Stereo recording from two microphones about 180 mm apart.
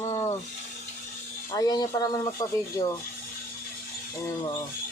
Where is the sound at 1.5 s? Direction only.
20° left (ahead or behind).